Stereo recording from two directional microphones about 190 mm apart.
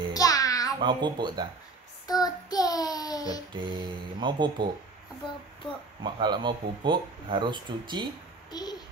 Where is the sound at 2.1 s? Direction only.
20° left (ahead or behind).